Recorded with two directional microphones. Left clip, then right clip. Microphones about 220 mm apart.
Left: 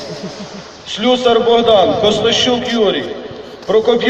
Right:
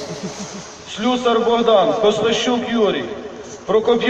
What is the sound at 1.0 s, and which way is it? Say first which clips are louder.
A man's voice: left 5 dB; 45° left (ahead or behind).